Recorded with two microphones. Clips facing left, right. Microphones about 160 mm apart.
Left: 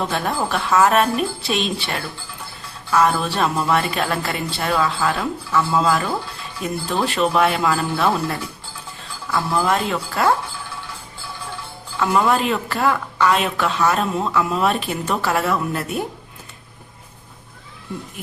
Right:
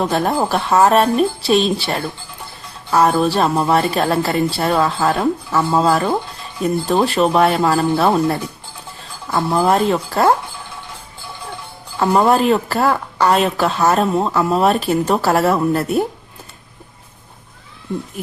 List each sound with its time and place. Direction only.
0.0 s a woman's voice: 40° right (ahead or behind)
9.6 s a woman's voice: 35° right (ahead or behind)
11.9 s a woman's voice: 40° right (ahead or behind)